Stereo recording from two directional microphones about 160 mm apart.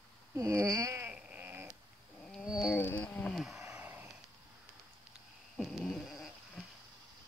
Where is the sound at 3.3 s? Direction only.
5° right (ahead or behind).